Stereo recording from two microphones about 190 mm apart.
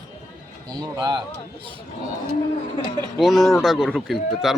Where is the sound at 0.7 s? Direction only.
20° right (ahead or behind).